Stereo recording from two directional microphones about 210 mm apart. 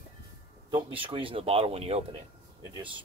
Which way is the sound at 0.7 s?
25° right (ahead or behind).